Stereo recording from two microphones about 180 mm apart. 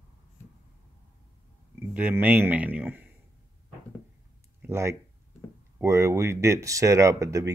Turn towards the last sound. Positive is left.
turn(degrees=-15)  # may be behind; listen again after turning